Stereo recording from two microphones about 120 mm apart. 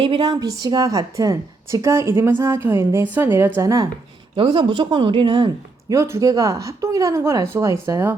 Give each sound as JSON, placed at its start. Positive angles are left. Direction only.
{"t": 0.0, "sound": "speech", "side_deg": -50}
{"t": 0.3, "sound": "a woman's voice", "side_deg": -30}
{"t": 4.4, "sound": "speech", "side_deg": -45}
{"t": 5.9, "sound": "a woman's voice", "side_deg": -25}